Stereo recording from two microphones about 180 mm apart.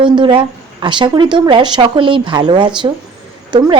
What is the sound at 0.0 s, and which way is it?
A woman's voice, 25° right (ahead or behind).